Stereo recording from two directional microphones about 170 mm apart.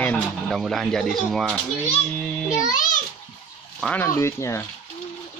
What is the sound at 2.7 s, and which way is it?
Speech, 50° left (ahead or behind).